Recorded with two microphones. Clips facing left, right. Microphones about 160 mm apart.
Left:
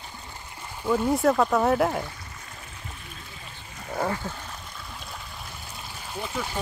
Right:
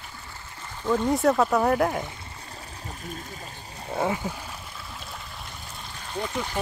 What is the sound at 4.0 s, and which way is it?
Speech, 10° right (ahead or behind).